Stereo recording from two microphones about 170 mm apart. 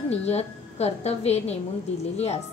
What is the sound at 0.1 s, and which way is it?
A woman's voice, 40° left (ahead or behind).